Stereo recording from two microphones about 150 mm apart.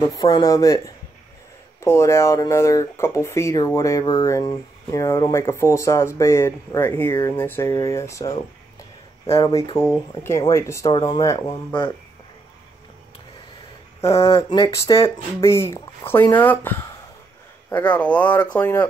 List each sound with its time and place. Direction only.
0.1 s speech: 25° left (ahead or behind)
9.4 s speech: 20° left (ahead or behind)
14.0 s speech: 20° left (ahead or behind)
14.3 s a sound: 35° left (ahead or behind)
15.0 s speech: 20° left (ahead or behind)